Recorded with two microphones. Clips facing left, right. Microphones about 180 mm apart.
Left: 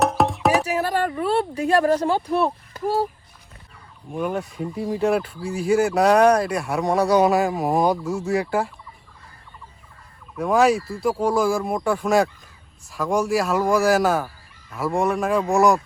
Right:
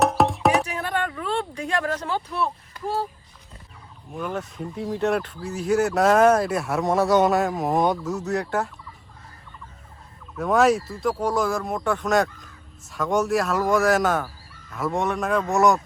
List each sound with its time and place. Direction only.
0.0 s music: centre (ahead or behind)
0.8 s a sound: 35° left (ahead or behind)
1.7 s speech: 35° left (ahead or behind)
2.3 s speech: 55° left (ahead or behind)
4.1 s speech: 10° left (ahead or behind)
8.3 s fowl: 5° left (ahead or behind)
10.3 s speech: centre (ahead or behind)